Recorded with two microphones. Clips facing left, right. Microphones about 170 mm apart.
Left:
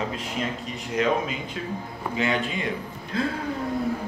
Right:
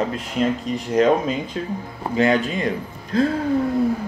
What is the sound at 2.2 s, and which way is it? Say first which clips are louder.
Speech: right 8 dB; 40° right (ahead or behind).